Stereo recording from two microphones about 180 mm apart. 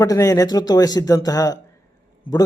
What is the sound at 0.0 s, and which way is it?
A man's voice, 20° left (ahead or behind).